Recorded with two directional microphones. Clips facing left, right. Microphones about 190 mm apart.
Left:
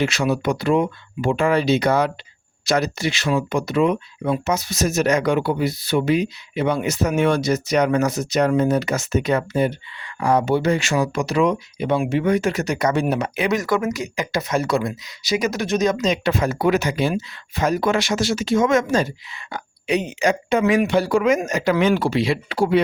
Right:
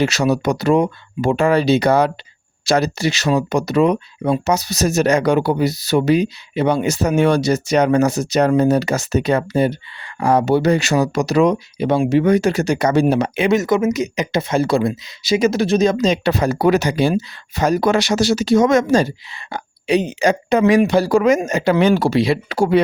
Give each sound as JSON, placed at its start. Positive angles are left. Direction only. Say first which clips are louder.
{"t": 0.0, "sound": "speech", "louder": "right 4 dB", "side_deg": -40}